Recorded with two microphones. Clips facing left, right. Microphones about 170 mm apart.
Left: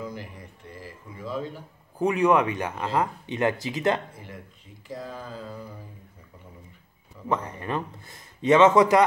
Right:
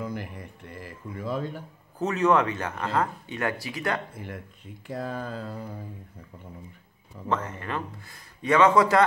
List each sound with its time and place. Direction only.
0.0 s a sound: 55° right (ahead or behind)
0.7 s speech: 55° right (ahead or behind)
2.0 s speech: 15° left (ahead or behind)
4.8 s speech: 60° right (ahead or behind)
7.2 s speech: 15° left (ahead or behind)